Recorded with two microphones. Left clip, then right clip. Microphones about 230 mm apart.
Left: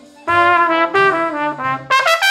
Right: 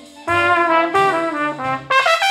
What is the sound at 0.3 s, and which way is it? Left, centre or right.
Trumpet, centre.